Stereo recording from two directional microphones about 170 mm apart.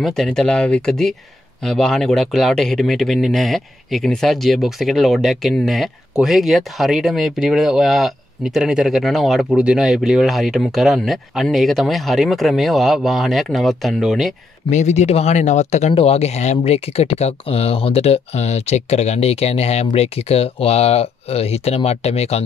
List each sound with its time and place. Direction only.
0.0 s speech: centre (ahead or behind)
14.7 s speech: 45° left (ahead or behind)